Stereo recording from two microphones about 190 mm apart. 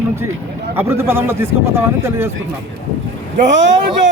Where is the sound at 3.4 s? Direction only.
70° right (ahead or behind).